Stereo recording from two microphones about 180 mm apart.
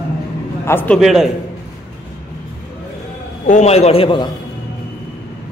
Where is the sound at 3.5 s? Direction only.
40° left (ahead or behind).